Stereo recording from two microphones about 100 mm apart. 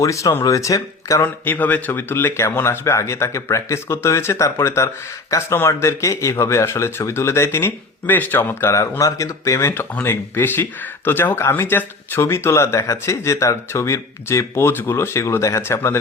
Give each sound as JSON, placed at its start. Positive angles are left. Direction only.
{"t": 0.0, "sound": "speech", "side_deg": 35}
{"t": 1.5, "sound": "speech", "side_deg": 20}